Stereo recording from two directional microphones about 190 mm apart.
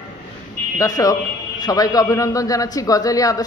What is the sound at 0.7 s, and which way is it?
A man's voice, 20° left (ahead or behind).